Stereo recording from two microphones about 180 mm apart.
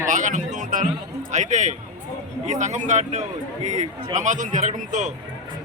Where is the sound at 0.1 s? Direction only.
45° right (ahead or behind).